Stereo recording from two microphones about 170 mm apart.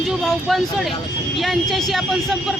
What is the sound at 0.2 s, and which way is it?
Speech, centre (ahead or behind).